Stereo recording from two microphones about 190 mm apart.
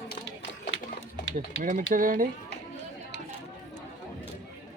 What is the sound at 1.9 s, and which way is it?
Speech, 45° right (ahead or behind).